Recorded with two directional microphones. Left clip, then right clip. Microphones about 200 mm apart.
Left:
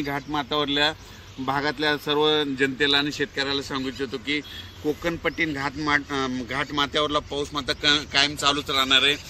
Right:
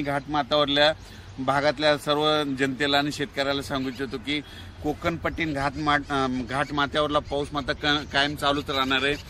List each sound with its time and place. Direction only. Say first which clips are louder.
0.0 s a man's voice: right 2 dB; 25° right (ahead or behind); by 9.2 s 50° right (ahead or behind)